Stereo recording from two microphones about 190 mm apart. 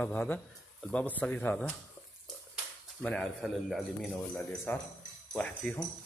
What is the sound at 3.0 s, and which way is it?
Speech, 5° left (ahead or behind).